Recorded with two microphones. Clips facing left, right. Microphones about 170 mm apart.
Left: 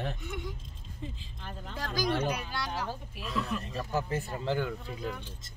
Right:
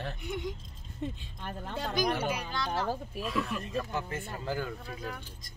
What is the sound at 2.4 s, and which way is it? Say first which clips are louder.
Speech: right 3 dB; 10° left (ahead or behind).